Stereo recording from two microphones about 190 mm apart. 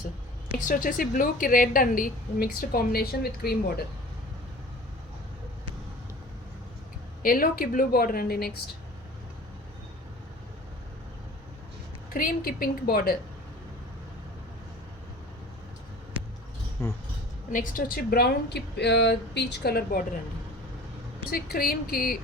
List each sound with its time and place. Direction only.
0.6 s a woman's voice: 45° left (ahead or behind)
7.2 s a woman's voice: 50° left (ahead or behind)
12.1 s a woman's voice: 50° left (ahead or behind)
16.8 s speech: 15° left (ahead or behind)
17.5 s speech: 45° left (ahead or behind)
21.2 s a woman's voice: 50° left (ahead or behind)